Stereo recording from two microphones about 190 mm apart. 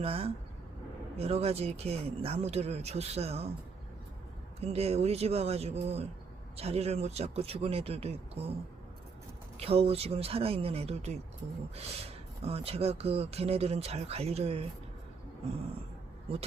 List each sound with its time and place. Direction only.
0.0 s speech: 30° right (ahead or behind)
4.6 s speech: 35° right (ahead or behind)
9.6 s speech: 30° right (ahead or behind)